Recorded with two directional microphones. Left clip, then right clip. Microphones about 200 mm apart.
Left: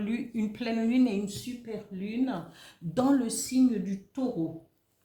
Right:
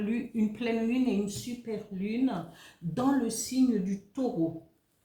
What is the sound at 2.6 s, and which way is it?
Speech, 45° left (ahead or behind).